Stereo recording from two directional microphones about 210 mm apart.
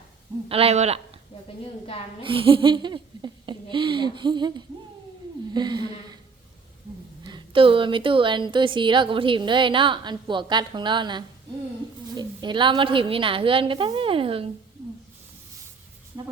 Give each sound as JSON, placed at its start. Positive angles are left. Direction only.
{"t": 0.4, "sound": "a woman's voice", "side_deg": -30}
{"t": 2.2, "sound": "a woman's voice", "side_deg": -25}
{"t": 7.3, "sound": "a woman's voice", "side_deg": -25}
{"t": 16.1, "sound": "speech", "side_deg": -15}